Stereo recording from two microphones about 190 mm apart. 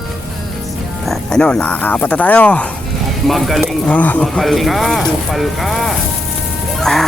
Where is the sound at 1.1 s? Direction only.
5° left (ahead or behind).